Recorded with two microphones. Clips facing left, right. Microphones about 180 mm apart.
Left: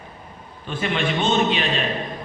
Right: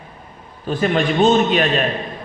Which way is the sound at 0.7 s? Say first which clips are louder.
Right 6 dB; 40° right (ahead or behind).